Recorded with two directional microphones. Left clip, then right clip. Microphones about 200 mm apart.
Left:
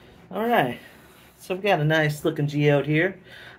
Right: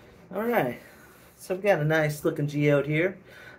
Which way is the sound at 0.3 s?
25° left (ahead or behind).